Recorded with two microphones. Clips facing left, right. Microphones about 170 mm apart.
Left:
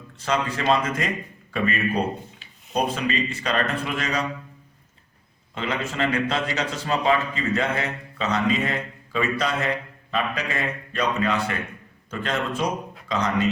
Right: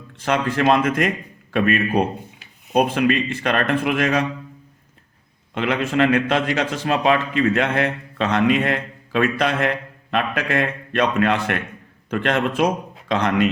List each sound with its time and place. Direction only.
0.3 s a man's voice: 60° right (ahead or behind)
5.5 s a man's voice: 65° right (ahead or behind)